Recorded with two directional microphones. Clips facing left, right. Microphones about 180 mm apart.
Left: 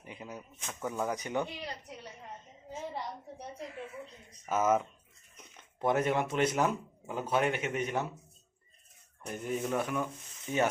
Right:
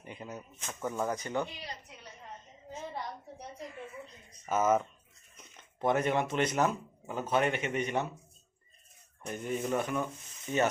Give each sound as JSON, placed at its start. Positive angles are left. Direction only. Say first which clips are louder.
{"t": 0.0, "sound": "speech", "louder": "right 1 dB", "side_deg": 5}
{"t": 1.1, "sound": "speech", "louder": "even", "side_deg": 15}
{"t": 3.4, "sound": "speech", "louder": "left 2 dB", "side_deg": 5}
{"t": 9.2, "sound": "speech", "louder": "even", "side_deg": 5}